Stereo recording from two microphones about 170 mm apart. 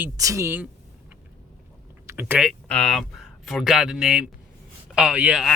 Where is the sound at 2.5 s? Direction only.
5° left (ahead or behind).